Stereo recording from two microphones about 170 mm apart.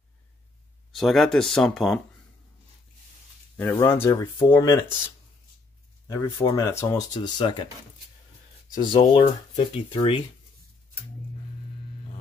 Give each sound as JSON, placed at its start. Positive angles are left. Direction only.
{"t": 0.9, "sound": "speech", "side_deg": 0}
{"t": 3.7, "sound": "speech", "side_deg": 15}
{"t": 6.0, "sound": "speech", "side_deg": 15}
{"t": 8.8, "sound": "speech", "side_deg": 30}